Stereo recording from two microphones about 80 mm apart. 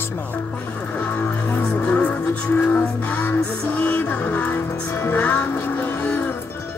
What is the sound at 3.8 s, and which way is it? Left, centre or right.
Music, centre.